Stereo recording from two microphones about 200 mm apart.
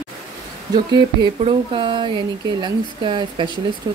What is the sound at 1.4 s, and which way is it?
Speech, 25° right (ahead or behind).